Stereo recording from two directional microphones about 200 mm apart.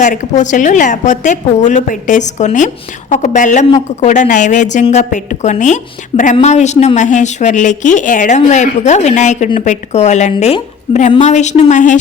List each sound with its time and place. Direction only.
0.0 s a woman's voice: 40° left (ahead or behind)